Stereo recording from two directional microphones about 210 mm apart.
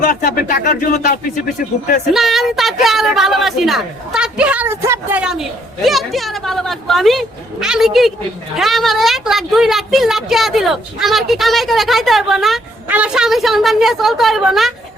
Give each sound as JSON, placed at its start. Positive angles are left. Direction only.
{"t": 0.0, "sound": "speech", "side_deg": 40}
{"t": 2.1, "sound": "a woman's voice", "side_deg": 0}